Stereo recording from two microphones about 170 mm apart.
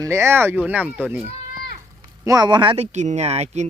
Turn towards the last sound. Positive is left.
turn(degrees=-40)  # may be behind; listen again after turning